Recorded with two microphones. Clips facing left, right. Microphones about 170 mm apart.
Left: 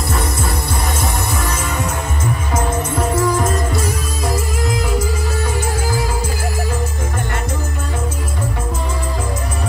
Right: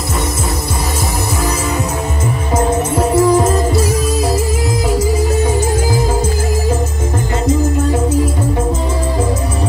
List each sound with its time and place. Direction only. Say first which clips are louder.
3.2 s music: right 7 dB; 30° right (ahead or behind)